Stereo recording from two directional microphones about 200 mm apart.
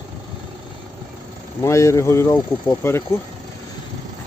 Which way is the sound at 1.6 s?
15° left (ahead or behind).